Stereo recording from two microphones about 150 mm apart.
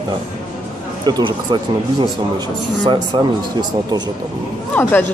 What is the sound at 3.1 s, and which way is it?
Speech, 30° right (ahead or behind).